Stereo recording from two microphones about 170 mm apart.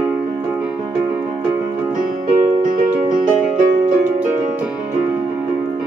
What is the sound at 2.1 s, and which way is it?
Music, 50° right (ahead or behind).